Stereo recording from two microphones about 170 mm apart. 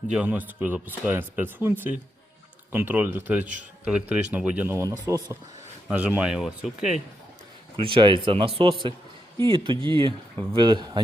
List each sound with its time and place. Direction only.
0.1 s speech: 5° right (ahead or behind)
7.8 s speech: 30° right (ahead or behind)